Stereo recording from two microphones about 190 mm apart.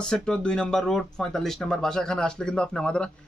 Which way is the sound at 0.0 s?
5° left (ahead or behind).